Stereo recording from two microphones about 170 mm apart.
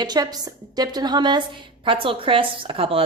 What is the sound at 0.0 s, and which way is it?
A woman's voice, 25° right (ahead or behind).